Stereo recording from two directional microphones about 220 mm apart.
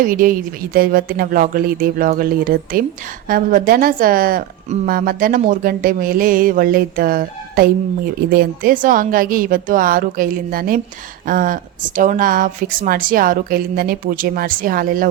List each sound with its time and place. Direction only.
0.0 s a woman's voice: 40° right (ahead or behind)